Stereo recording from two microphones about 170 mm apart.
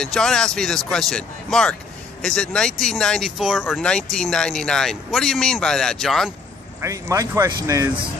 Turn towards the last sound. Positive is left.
turn(degrees=-20)  # may be behind; listen again after turning